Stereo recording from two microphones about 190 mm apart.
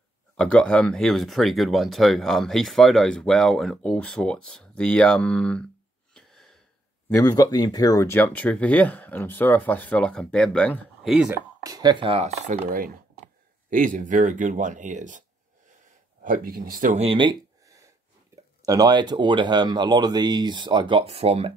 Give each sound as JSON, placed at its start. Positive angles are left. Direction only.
{"t": 0.4, "sound": "speech", "side_deg": 5}
{"t": 6.1, "sound": "a sound", "side_deg": 0}
{"t": 7.1, "sound": "speech", "side_deg": 15}
{"t": 11.6, "sound": "speech", "side_deg": -20}
{"t": 12.7, "sound": "speech", "side_deg": -50}
{"t": 16.3, "sound": "speech", "side_deg": -50}